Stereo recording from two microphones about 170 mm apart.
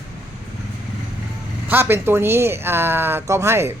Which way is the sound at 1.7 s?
15° right (ahead or behind).